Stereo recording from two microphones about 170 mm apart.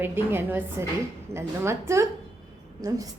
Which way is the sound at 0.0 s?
15° right (ahead or behind).